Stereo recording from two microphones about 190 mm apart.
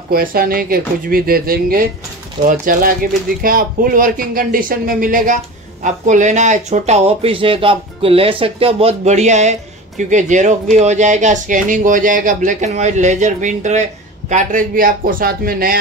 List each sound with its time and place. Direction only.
0.1 s speech: 50° right (ahead or behind)